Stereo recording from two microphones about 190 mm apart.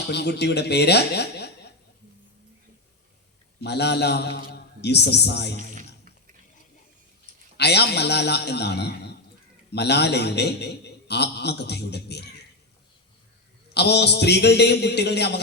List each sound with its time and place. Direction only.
0.1 s a man's voice: 60° left (ahead or behind)
3.6 s a man's voice: 60° left (ahead or behind)
7.5 s a man's voice: 60° left (ahead or behind)
13.7 s a man's voice: 60° left (ahead or behind)